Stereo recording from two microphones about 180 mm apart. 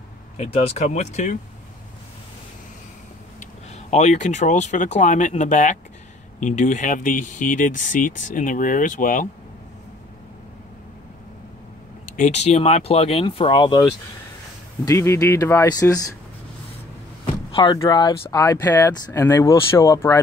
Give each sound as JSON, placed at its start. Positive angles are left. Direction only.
{"t": 0.4, "sound": "speech", "side_deg": 40}
{"t": 3.3, "sound": "speech", "side_deg": 40}
{"t": 12.2, "sound": "speech", "side_deg": 35}
{"t": 14.9, "sound": "speech", "side_deg": 15}
{"t": 17.6, "sound": "speech", "side_deg": 25}